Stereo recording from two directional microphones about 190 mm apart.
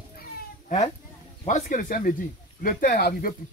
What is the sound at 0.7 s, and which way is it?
Speech, 35° left (ahead or behind).